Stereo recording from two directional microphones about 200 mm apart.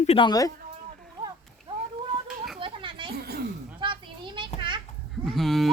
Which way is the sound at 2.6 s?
25° right (ahead or behind).